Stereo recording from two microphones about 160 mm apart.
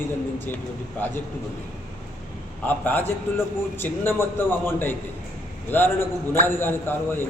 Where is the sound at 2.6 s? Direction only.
10° left (ahead or behind).